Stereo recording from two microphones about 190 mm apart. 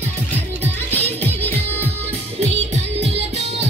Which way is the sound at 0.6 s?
30° right (ahead or behind).